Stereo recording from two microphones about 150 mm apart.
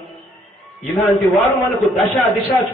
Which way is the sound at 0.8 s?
Centre (ahead or behind).